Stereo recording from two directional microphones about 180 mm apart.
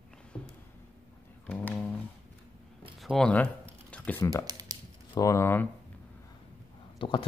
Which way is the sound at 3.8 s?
5° left (ahead or behind).